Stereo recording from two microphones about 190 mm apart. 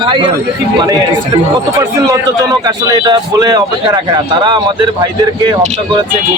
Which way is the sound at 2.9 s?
20° right (ahead or behind).